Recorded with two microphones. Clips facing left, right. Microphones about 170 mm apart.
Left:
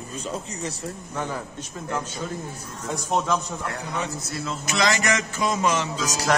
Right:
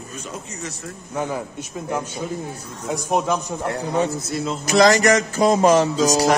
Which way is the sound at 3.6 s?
30° right (ahead or behind).